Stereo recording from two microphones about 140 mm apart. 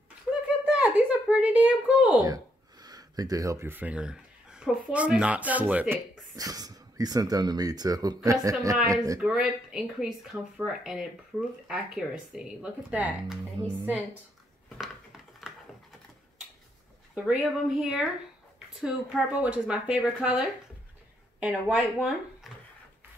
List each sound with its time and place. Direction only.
0.3 s a sound: 10° right (ahead or behind)
2.2 s speech: 25° right (ahead or behind); by 5.9 s 10° right (ahead or behind)
6.3 s speech: 25° right (ahead or behind)
9.2 s speech: 5° right (ahead or behind)
14.8 s a sound: centre (ahead or behind)
17.1 s speech: 5° right (ahead or behind)